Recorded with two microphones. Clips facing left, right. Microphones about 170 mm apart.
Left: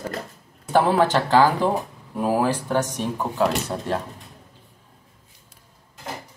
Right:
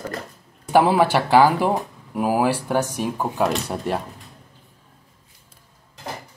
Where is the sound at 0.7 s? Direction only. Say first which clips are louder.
Right 2 dB; 10° right (ahead or behind).